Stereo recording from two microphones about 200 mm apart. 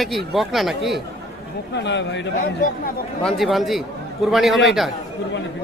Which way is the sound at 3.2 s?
Centre (ahead or behind).